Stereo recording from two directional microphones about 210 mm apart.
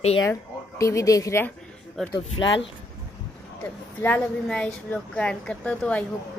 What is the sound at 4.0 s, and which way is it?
Speech, 5° left (ahead or behind).